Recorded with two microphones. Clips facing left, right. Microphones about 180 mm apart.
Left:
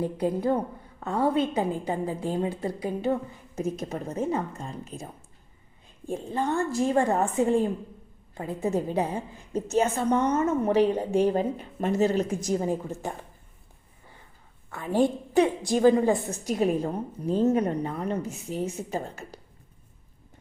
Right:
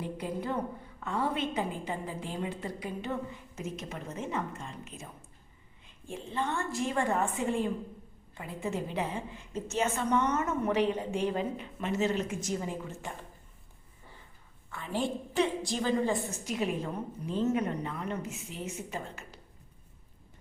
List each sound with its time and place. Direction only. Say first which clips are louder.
0.0 s a woman's voice: left 9 dB; 35° left (ahead or behind)
14.7 s a woman's voice: left 9 dB; 45° left (ahead or behind)